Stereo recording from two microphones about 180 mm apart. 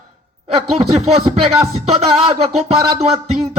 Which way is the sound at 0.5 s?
35° right (ahead or behind).